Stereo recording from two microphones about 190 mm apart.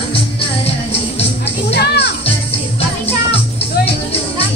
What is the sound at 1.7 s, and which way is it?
Music, 60° left (ahead or behind).